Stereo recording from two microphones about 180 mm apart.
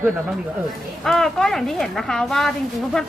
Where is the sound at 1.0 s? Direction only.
Centre (ahead or behind).